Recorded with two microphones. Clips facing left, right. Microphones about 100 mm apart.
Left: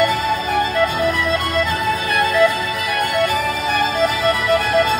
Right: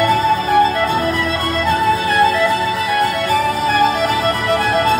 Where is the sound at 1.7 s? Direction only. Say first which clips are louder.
Right 5 dB; 30° right (ahead or behind).